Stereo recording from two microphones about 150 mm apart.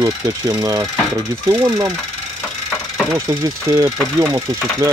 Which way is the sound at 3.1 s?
20° right (ahead or behind).